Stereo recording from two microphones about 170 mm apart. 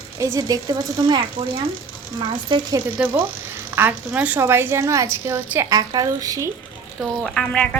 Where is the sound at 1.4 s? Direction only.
35° right (ahead or behind).